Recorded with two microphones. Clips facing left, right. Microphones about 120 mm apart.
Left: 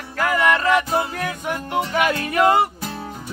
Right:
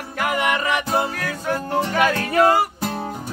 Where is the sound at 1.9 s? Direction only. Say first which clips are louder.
Right 1 dB; 35° right (ahead or behind).